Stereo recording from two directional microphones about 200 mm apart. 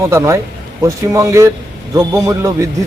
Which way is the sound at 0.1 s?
15° right (ahead or behind).